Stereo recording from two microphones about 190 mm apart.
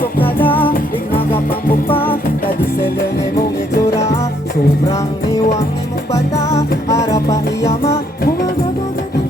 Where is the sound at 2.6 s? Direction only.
50° left (ahead or behind).